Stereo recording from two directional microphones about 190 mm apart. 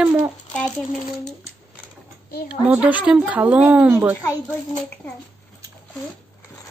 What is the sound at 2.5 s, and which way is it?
A woman's voice, 5° right (ahead or behind).